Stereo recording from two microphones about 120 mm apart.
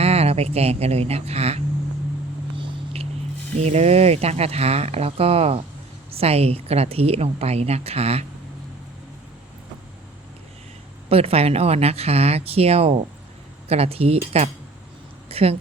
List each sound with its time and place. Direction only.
0.0 s speech: 60° right (ahead or behind)
2.6 s vehicle: 55° right (ahead or behind)
3.6 s a woman's voice: 65° right (ahead or behind)
11.1 s a woman's voice: 55° right (ahead or behind)